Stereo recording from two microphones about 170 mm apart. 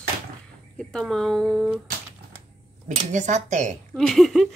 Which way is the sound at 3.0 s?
45° right (ahead or behind).